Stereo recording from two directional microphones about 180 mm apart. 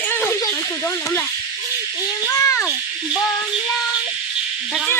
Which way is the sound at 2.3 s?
20° left (ahead or behind).